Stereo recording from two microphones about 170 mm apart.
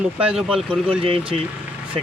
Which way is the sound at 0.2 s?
5° right (ahead or behind).